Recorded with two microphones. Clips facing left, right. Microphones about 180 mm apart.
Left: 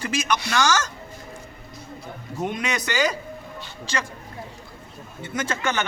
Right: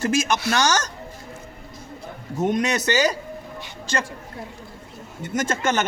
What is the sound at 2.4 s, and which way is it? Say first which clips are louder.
Speech: right 6 dB; 40° right (ahead or behind).